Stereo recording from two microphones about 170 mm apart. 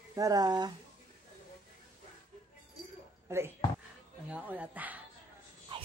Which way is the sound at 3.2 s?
15° right (ahead or behind).